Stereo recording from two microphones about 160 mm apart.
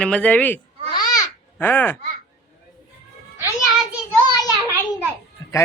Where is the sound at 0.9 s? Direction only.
25° left (ahead or behind).